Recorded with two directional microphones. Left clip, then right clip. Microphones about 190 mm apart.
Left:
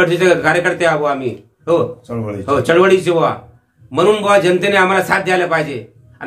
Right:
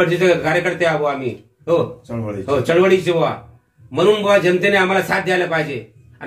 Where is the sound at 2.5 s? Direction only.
15° left (ahead or behind).